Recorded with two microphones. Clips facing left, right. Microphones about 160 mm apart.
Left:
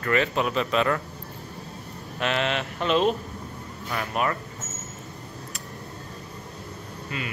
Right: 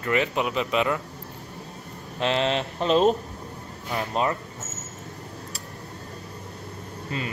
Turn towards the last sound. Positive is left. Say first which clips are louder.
# right 2 dB
turn(degrees=-35)  # may be behind; listen again after turning